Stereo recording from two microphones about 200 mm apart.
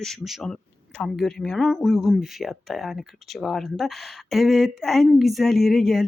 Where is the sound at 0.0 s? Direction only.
Centre (ahead or behind).